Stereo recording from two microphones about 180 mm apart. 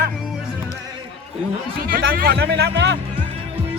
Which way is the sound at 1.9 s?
55° right (ahead or behind).